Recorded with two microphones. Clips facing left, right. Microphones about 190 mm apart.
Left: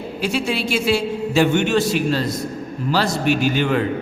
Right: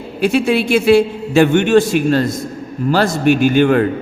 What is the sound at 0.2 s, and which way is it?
A man's voice, 55° right (ahead or behind).